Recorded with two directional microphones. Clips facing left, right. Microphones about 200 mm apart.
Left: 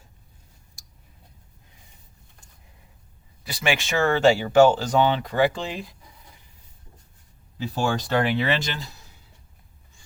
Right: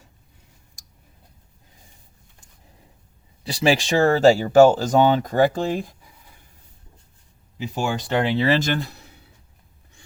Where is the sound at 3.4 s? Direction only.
30° right (ahead or behind).